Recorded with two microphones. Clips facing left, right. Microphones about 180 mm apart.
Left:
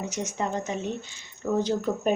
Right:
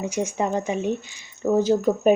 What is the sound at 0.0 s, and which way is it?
Speech, 10° right (ahead or behind).